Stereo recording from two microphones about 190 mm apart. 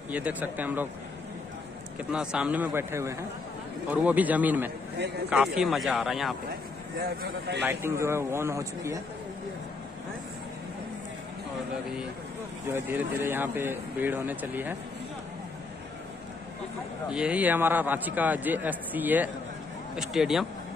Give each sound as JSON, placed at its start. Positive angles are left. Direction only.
{"t": 0.1, "sound": "a man's voice", "side_deg": -10}
{"t": 2.1, "sound": "a man's voice", "side_deg": -5}
{"t": 7.0, "sound": "speech", "side_deg": -55}
{"t": 7.6, "sound": "a man's voice", "side_deg": -15}
{"t": 12.6, "sound": "a man's voice", "side_deg": -15}
{"t": 17.1, "sound": "a man's voice", "side_deg": -5}